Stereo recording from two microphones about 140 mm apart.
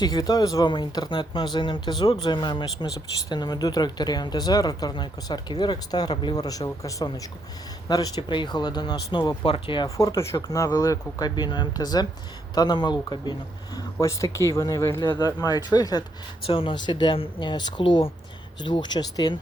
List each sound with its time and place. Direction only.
0.0 s speech: 30° left (ahead or behind)
10.0 s speech: 25° left (ahead or behind)
16.5 s speech: 40° left (ahead or behind)